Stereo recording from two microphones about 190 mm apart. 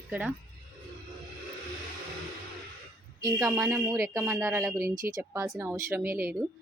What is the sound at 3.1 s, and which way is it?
A woman's voice, 20° right (ahead or behind).